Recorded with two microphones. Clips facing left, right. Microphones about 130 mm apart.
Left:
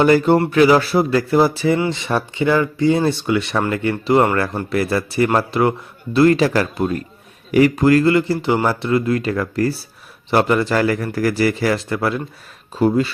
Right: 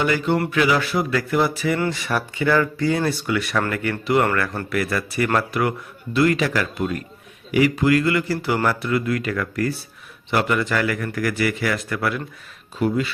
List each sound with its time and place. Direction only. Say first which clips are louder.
0.0 s speech: left 7 dB; 40° left (ahead or behind)